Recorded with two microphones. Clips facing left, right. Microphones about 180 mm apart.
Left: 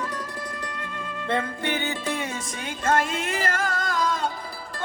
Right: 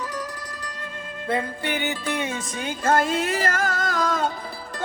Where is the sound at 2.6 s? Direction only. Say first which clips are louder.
Right 2 dB; 35° right (ahead or behind).